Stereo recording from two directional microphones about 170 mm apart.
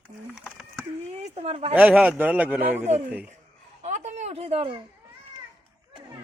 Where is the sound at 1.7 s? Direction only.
10° right (ahead or behind).